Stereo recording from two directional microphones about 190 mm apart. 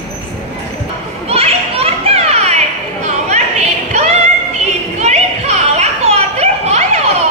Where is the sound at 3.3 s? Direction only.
35° right (ahead or behind).